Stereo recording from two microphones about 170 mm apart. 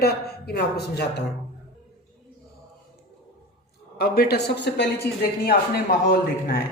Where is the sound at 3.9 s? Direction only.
65° left (ahead or behind); by 4.9 s 85° left.